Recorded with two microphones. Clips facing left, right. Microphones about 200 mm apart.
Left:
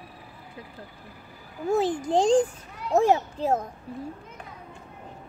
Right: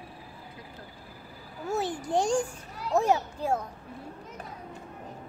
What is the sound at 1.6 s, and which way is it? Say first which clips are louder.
Speech: left 6 dB; 90° left.